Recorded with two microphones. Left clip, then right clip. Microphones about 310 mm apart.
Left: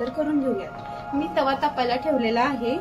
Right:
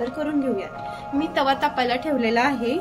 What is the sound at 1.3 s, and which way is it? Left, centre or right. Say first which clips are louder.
A woman's voice: right 2 dB; centre.